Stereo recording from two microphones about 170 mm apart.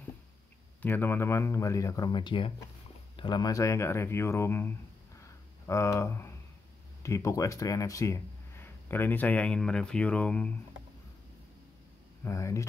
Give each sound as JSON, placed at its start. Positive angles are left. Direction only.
{"t": 0.8, "sound": "speech", "side_deg": 10}
{"t": 5.2, "sound": "a sound", "side_deg": 15}
{"t": 7.0, "sound": "speech", "side_deg": 15}
{"t": 12.3, "sound": "speech", "side_deg": 20}